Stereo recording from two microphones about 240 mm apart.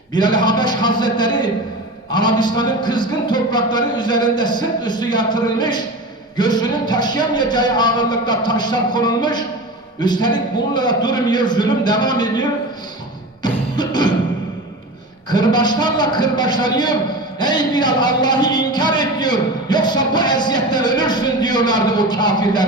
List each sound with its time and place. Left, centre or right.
0.1 s a man's voice: centre
13.4 s music: centre
15.3 s a man's voice: centre